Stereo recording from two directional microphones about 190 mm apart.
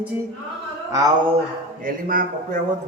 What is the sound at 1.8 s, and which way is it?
Speech, 45° right (ahead or behind).